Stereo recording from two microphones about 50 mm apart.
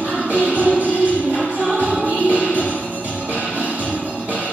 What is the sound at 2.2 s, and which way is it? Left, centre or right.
Music, right.